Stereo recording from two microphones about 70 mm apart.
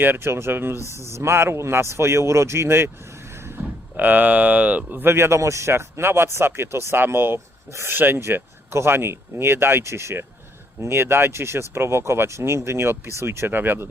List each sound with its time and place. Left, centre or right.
0.0 s speech: right
3.3 s vehicle: right
3.9 s speech: right